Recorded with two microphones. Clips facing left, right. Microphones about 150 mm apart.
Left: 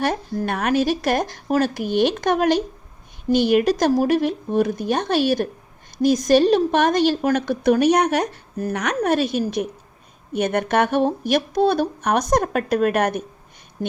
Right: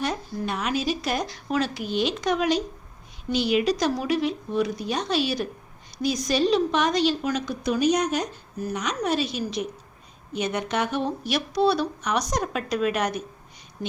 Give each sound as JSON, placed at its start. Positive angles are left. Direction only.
{"t": 0.0, "sound": "a woman's voice", "side_deg": 60}